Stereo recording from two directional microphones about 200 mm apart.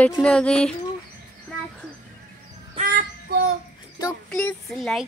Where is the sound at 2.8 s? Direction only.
50° right (ahead or behind).